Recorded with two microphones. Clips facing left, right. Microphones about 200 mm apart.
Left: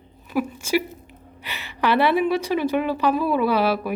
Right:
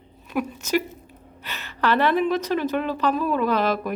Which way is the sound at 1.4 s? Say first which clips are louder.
Left 1 dB; 15° left (ahead or behind).